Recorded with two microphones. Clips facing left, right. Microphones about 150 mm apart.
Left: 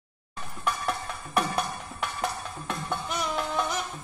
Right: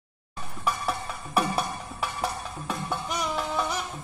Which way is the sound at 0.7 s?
5° right (ahead or behind).